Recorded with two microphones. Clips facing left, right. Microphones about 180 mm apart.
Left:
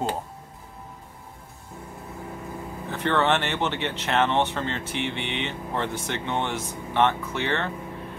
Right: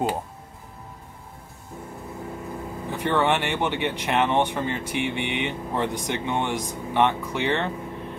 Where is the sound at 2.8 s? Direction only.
10° right (ahead or behind).